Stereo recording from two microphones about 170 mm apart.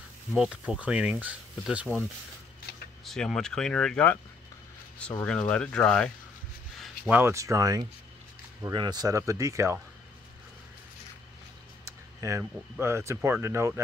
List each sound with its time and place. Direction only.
0.3 s speech: 5° right (ahead or behind)
3.1 s speech: centre (ahead or behind)
5.2 s speech: 5° left (ahead or behind)
7.1 s speech: 15° right (ahead or behind)
11.8 s speech: 20° right (ahead or behind)